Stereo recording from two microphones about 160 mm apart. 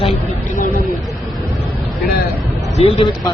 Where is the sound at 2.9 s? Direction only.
35° left (ahead or behind).